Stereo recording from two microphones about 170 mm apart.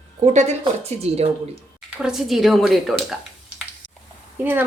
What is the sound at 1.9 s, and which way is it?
Speech, 5° right (ahead or behind).